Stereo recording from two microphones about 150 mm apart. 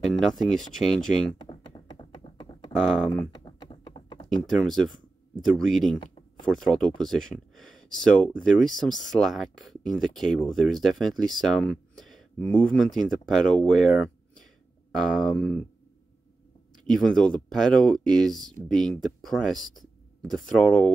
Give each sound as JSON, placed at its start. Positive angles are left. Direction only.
{"t": 0.1, "sound": "speech", "side_deg": 0}
{"t": 1.5, "sound": "a sound", "side_deg": 35}
{"t": 2.7, "sound": "speech", "side_deg": 5}
{"t": 3.1, "sound": "typing", "side_deg": 30}
{"t": 4.5, "sound": "speech", "side_deg": 0}
{"t": 16.8, "sound": "speech", "side_deg": 5}